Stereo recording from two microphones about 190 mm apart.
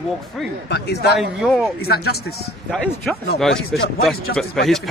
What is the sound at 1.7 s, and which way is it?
Speech, 55° left (ahead or behind).